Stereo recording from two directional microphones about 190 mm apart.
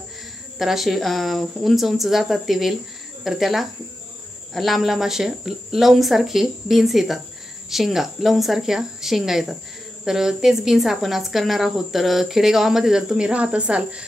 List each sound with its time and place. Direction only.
0.6 s speech: centre (ahead or behind)